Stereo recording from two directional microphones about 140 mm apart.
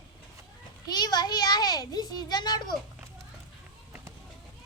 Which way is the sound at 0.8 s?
30° left (ahead or behind).